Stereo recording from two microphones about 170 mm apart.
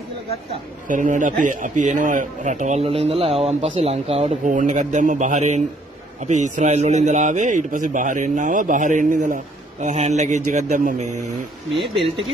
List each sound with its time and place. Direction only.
0.8 s speech: 50° right (ahead or behind)
11.9 s speech: 35° right (ahead or behind)